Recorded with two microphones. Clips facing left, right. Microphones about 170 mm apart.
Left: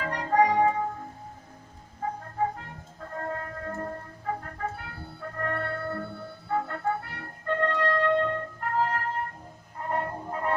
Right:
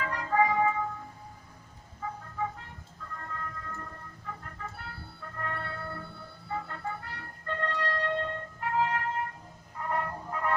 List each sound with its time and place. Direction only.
0.0 s music: 35° left (ahead or behind)
2.0 s music: 50° left (ahead or behind)
9.8 s train: 35° left (ahead or behind)